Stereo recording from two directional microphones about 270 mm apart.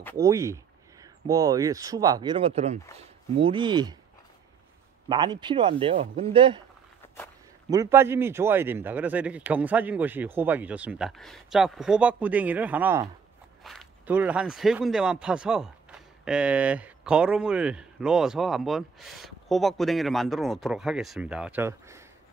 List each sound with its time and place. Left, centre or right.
0.2 s speech: centre
5.0 s speech: centre
7.7 s speech: centre